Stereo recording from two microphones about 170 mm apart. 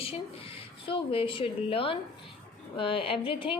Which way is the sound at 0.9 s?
30° left (ahead or behind).